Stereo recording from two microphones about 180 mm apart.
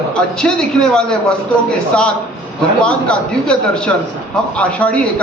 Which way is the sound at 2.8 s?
5° left (ahead or behind).